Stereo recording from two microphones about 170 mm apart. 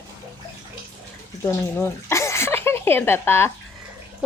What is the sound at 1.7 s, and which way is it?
Speech, 15° left (ahead or behind).